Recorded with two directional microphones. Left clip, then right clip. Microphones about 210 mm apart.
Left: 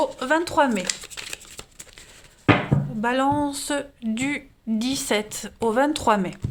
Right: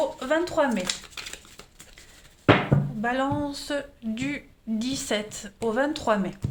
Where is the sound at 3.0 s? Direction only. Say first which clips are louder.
Left 6 dB; 40° left (ahead or behind).